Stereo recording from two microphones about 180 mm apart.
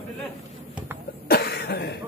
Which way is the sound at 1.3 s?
60° left (ahead or behind).